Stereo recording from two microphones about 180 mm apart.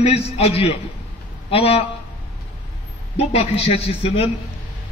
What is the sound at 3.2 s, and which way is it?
A man's voice, 35° left (ahead or behind).